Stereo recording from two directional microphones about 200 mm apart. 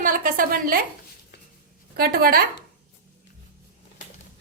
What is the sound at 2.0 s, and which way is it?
Speech, 50° right (ahead or behind).